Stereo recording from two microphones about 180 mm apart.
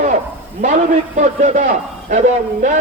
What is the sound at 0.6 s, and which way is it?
A man's voice, 45° right (ahead or behind).